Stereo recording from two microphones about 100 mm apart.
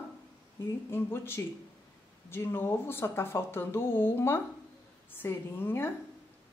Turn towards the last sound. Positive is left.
turn(degrees=25)  # may be behind; listen again after turning